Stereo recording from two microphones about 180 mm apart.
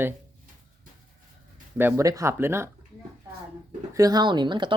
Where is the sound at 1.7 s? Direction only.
15° right (ahead or behind).